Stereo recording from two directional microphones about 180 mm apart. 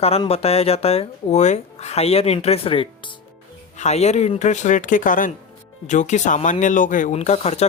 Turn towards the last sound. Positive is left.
turn(degrees=40)  # may be behind; listen again after turning